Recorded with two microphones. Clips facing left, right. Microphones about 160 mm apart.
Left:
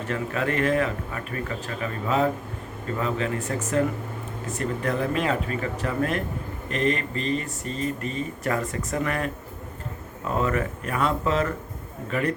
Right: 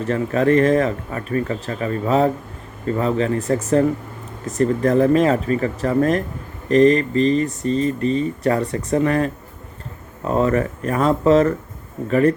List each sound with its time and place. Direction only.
0.0 s speech: 35° right (ahead or behind)